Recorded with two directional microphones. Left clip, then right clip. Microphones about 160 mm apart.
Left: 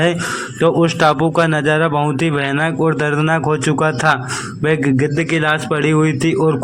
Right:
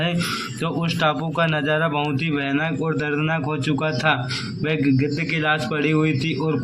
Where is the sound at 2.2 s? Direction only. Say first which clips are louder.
Left 6 dB; 45° left (ahead or behind).